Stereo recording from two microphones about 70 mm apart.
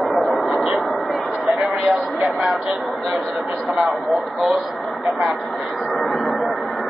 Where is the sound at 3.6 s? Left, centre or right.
Centre.